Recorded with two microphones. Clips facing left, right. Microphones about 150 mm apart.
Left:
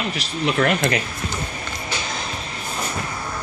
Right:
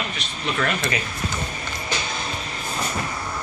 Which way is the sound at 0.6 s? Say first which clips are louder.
Left 5 dB; 65° left (ahead or behind).